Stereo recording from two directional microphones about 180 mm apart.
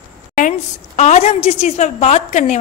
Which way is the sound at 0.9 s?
40° left (ahead or behind).